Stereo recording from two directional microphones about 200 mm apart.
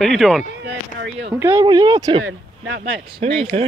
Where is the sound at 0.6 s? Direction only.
60° right (ahead or behind).